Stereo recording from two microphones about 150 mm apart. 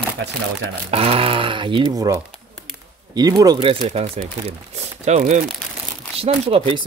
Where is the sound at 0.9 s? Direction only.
40° right (ahead or behind); by 3.6 s 25° right (ahead or behind).